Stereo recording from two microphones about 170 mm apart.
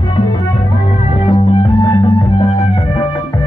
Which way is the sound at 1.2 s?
30° left (ahead or behind).